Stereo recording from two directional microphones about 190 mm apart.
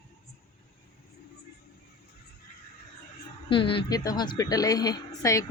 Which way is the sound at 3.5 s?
25° left (ahead or behind).